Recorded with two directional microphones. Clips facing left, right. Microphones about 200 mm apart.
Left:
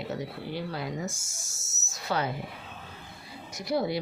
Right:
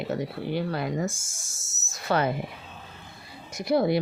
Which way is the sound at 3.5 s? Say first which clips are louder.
Right 5 dB; 55° right (ahead or behind).